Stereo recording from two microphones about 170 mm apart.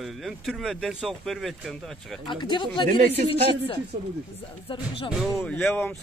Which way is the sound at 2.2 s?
30° left (ahead or behind).